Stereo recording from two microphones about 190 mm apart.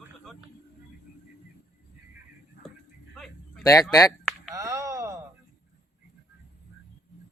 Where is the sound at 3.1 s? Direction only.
5° left (ahead or behind).